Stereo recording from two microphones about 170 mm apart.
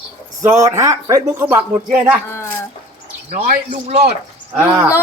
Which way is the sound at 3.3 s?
45° right (ahead or behind).